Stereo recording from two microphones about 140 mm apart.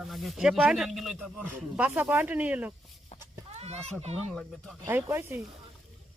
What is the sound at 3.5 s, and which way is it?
Speech, 50° right (ahead or behind).